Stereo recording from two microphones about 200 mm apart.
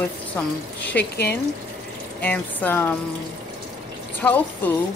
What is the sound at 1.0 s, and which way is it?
Speech, 55° left (ahead or behind).